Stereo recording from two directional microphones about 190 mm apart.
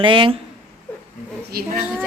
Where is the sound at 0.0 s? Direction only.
25° right (ahead or behind).